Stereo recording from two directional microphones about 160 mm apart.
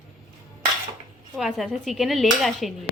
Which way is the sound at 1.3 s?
Centre (ahead or behind).